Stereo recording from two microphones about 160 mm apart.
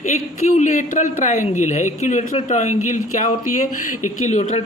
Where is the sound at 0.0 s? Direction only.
50° left (ahead or behind).